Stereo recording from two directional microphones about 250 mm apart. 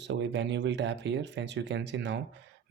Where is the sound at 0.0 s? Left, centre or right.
Right.